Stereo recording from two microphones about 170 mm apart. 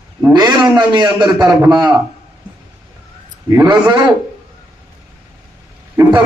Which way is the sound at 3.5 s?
20° right (ahead or behind).